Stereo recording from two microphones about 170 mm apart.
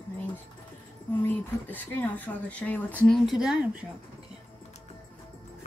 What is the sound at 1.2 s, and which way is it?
Speech, 10° left (ahead or behind).